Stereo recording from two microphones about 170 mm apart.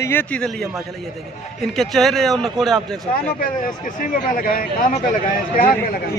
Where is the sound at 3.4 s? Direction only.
50° left (ahead or behind).